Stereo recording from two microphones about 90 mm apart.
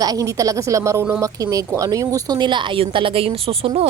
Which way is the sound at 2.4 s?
60° right (ahead or behind).